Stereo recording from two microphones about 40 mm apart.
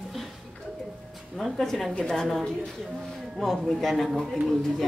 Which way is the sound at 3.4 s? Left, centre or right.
Centre.